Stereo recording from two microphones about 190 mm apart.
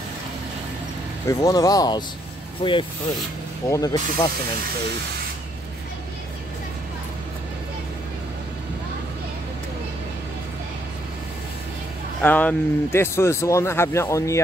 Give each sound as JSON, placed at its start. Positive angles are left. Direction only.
{"t": 1.2, "sound": "speech", "side_deg": 15}
{"t": 12.2, "sound": "speech", "side_deg": 10}